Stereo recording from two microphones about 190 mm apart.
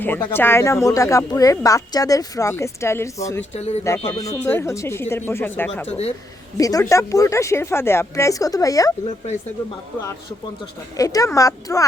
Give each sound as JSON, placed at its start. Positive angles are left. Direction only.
{"t": 0.0, "sound": "speech", "side_deg": 10}
{"t": 3.5, "sound": "speech", "side_deg": 35}
{"t": 3.8, "sound": "speech", "side_deg": 15}
{"t": 10.9, "sound": "speech", "side_deg": 20}